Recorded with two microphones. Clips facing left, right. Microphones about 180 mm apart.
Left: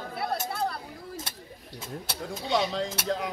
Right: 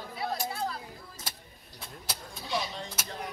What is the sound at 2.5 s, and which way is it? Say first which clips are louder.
Speech: left 7 dB; 90° left.